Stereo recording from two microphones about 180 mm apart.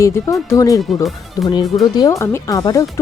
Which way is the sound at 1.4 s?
20° left (ahead or behind).